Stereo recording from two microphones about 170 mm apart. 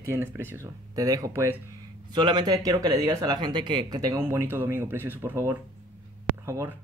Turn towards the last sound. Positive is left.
turn(degrees=-15)  # may be behind; listen again after turning